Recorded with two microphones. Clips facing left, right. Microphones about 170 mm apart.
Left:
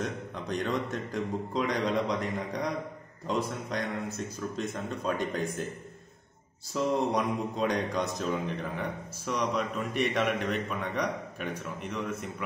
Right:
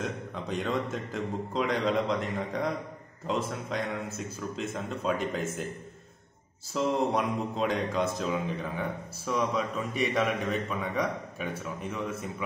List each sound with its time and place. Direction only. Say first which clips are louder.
0.0 s speech: even; centre (ahead or behind)
6.7 s speech: even; centre (ahead or behind)